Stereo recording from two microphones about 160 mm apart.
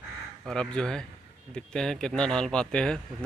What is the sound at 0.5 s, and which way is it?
Speech, 5° left (ahead or behind).